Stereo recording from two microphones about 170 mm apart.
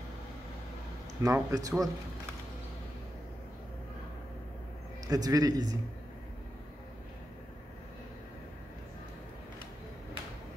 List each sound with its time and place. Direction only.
1.2 s a man's voice: 20° right (ahead or behind)
5.0 s a man's voice: 20° right (ahead or behind)